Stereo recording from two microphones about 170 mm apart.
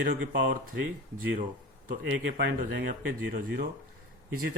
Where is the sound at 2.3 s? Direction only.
80° right.